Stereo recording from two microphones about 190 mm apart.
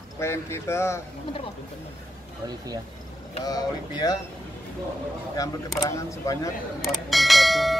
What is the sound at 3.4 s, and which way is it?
Speech, 20° left (ahead or behind).